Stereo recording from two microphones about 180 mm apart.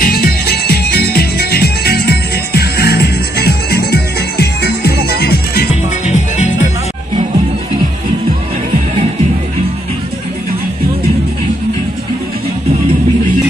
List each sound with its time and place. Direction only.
0.0 s music: 55° left (ahead or behind)
6.1 s music: 40° left (ahead or behind)